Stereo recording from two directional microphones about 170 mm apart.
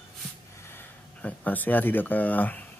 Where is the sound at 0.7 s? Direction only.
10° left (ahead or behind).